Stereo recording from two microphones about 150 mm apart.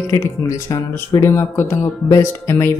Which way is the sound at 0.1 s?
20° left (ahead or behind).